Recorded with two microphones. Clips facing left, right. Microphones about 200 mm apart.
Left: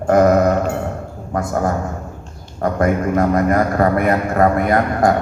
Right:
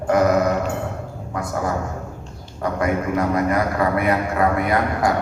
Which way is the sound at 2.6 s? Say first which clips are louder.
Left 4 dB; 50° left (ahead or behind).